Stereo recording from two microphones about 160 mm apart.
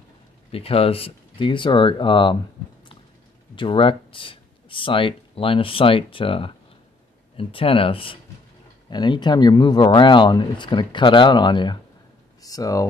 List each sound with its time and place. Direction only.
0.5 s speech: 35° left (ahead or behind)
3.5 s speech: 35° left (ahead or behind)